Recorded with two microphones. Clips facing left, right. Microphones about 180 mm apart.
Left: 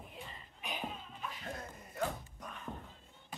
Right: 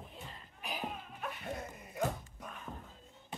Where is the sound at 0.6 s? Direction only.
Centre (ahead or behind).